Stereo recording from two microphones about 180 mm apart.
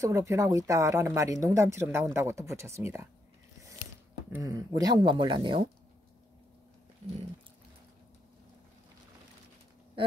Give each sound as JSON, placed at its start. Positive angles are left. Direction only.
{"t": 0.0, "sound": "speech", "side_deg": -15}
{"t": 4.3, "sound": "speech", "side_deg": -20}